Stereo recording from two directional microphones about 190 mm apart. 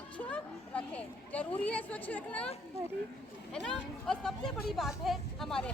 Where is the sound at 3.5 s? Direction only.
5° left (ahead or behind).